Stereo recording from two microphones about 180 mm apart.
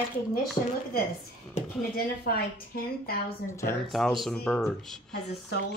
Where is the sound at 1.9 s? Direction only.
55° left (ahead or behind).